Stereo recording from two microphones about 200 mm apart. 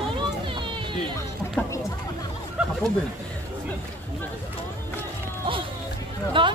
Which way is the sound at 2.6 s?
5° right (ahead or behind).